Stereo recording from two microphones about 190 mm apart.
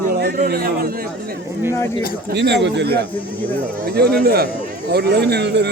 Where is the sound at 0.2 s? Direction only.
55° right (ahead or behind).